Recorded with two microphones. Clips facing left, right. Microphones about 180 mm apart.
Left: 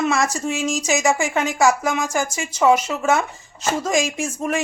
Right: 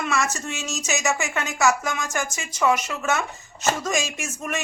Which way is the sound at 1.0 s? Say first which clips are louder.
Left 5 dB; 30° left (ahead or behind).